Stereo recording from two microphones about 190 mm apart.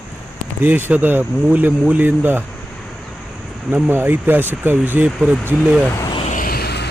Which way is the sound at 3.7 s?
10° right (ahead or behind).